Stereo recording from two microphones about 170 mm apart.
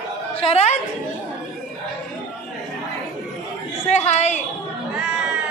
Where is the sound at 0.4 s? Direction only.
35° left (ahead or behind).